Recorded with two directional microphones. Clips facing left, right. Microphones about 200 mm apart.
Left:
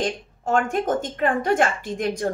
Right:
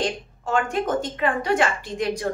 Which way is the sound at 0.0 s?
50° left (ahead or behind).